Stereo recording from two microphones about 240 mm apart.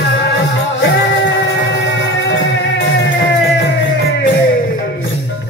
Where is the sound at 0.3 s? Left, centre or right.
Left.